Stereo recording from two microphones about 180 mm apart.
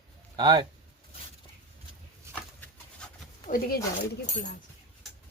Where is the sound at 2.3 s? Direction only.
5° left (ahead or behind).